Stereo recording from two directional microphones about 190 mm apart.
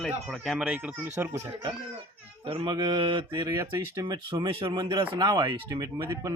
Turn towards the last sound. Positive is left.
turn(degrees=-20)  # may be behind; listen again after turning